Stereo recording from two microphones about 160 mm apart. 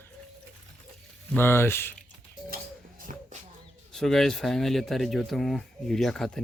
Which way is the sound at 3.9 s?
Centre (ahead or behind).